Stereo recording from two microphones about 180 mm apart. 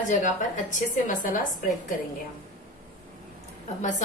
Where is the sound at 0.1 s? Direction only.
45° left (ahead or behind).